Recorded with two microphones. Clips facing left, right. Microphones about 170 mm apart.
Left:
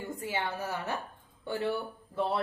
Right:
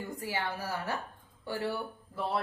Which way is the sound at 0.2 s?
20° left (ahead or behind).